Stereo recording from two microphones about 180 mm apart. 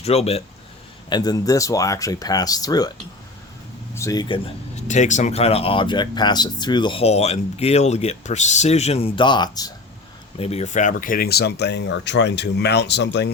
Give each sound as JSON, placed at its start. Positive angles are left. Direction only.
{"t": 0.0, "sound": "speech", "side_deg": 35}
{"t": 1.1, "sound": "speech", "side_deg": 20}
{"t": 3.9, "sound": "speech", "side_deg": 20}
{"t": 4.7, "sound": "speech", "side_deg": 40}
{"t": 10.3, "sound": "speech", "side_deg": 35}